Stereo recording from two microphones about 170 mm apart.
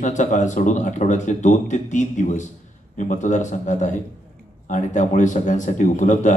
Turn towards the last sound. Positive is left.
turn(degrees=45)  # may be behind; listen again after turning